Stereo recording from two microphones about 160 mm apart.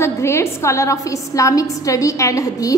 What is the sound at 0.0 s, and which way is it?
A woman's voice, 15° left (ahead or behind).